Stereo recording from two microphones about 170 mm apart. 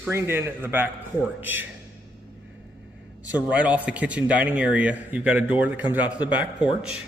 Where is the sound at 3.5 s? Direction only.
10° right (ahead or behind).